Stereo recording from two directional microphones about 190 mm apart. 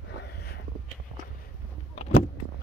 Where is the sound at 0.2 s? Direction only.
55° left (ahead or behind).